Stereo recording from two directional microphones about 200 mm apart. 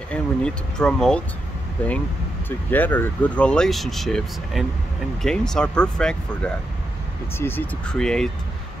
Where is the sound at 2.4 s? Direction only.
10° left (ahead or behind).